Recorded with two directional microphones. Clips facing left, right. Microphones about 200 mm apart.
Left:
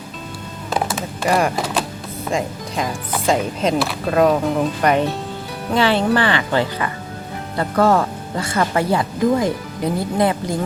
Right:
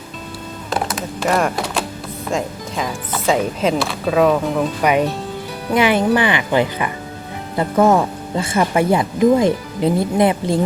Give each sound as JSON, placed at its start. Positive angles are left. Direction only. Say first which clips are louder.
{"t": 1.2, "sound": "speech", "louder": "even", "side_deg": 0}